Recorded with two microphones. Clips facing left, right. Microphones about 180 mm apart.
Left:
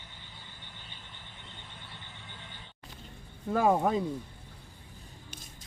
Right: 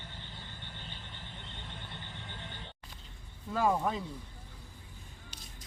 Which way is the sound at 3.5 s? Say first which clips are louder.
Left 4 dB; 50° left (ahead or behind).